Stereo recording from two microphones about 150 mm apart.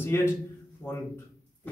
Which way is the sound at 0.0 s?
15° left (ahead or behind).